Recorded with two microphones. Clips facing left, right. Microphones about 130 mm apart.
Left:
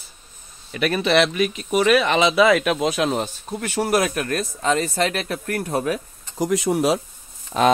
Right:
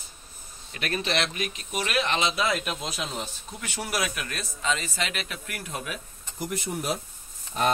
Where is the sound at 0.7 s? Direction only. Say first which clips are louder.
Left 10 dB; 70° left (ahead or behind); by 5.8 s 40° left (ahead or behind).